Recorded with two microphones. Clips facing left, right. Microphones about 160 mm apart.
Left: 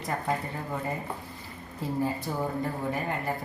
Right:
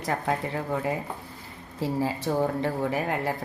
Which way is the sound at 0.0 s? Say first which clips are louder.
Right 3 dB; 80° right.